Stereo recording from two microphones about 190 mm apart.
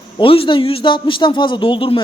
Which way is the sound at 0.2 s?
25° left (ahead or behind).